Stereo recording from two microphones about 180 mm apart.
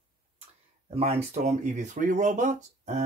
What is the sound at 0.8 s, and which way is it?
Speech, 35° right (ahead or behind).